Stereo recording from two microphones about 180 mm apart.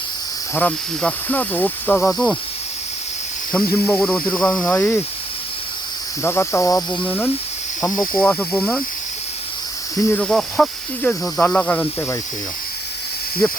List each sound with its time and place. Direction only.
0.5 s speech: 10° left (ahead or behind)
3.5 s speech: 10° left (ahead or behind)
6.2 s speech: 15° left (ahead or behind)
10.1 s speech: 5° left (ahead or behind)